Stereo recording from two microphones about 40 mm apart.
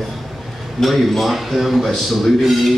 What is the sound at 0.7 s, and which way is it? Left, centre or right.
A man's voice, centre.